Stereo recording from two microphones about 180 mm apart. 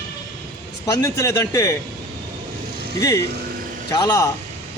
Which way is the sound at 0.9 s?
15° left (ahead or behind).